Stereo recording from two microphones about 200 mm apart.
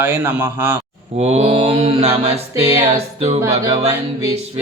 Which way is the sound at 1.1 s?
35° right (ahead or behind).